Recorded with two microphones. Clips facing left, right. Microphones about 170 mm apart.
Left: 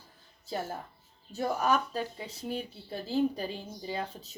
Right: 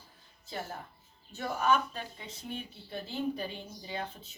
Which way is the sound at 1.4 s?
40° left (ahead or behind).